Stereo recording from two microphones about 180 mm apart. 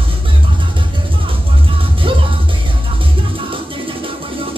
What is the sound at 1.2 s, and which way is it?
Music, 30° right (ahead or behind).